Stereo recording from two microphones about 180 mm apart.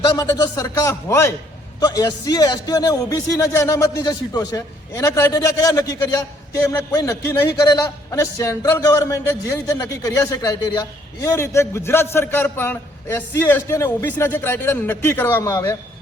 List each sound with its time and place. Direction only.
0.2 s speech: 20° left (ahead or behind)